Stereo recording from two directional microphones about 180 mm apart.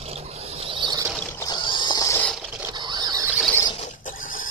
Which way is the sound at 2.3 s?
Centre (ahead or behind).